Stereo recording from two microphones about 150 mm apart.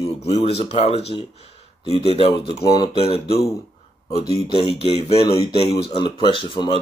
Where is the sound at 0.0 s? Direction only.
45° left (ahead or behind).